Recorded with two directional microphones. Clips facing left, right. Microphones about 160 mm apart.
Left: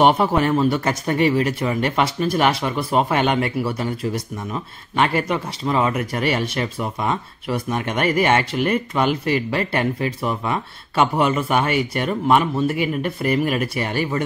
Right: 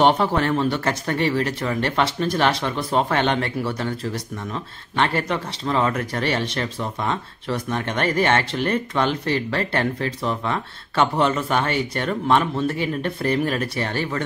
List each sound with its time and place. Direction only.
0.0 s speech: 10° left (ahead or behind)